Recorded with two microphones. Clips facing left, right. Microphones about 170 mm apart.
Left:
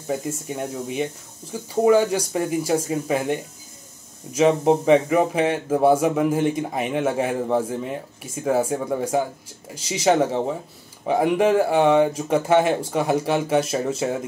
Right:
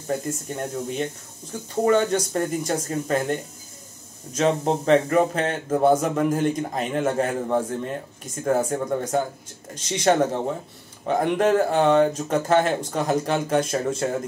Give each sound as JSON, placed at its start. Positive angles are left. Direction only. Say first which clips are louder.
{"t": 0.0, "sound": "speech", "louder": "left 1 dB", "side_deg": 5}